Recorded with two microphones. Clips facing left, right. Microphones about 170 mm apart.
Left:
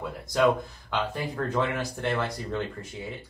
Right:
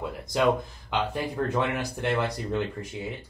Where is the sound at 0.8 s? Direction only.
15° right (ahead or behind).